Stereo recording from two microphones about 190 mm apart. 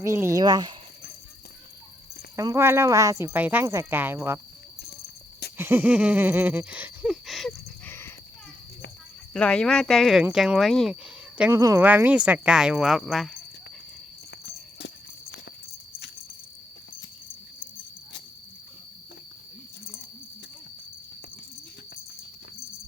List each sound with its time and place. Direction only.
0.0 s speech: 15° right (ahead or behind)
2.3 s speech: 15° right (ahead or behind)
5.5 s speech: 10° right (ahead or behind)
7.9 s a sound: 15° left (ahead or behind)
9.3 s speech: 5° left (ahead or behind)
11.3 s speech: 10° right (ahead or behind)
14.3 s cricket: 60° left (ahead or behind)
17.6 s cricket: 50° left (ahead or behind)